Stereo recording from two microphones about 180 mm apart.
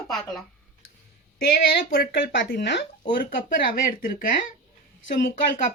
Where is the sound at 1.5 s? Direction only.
55° left (ahead or behind).